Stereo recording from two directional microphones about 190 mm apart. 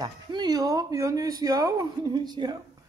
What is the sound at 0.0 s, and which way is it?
Speech, 20° right (ahead or behind).